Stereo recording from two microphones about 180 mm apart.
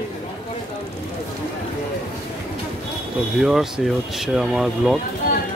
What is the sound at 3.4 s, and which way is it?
Speech, centre (ahead or behind).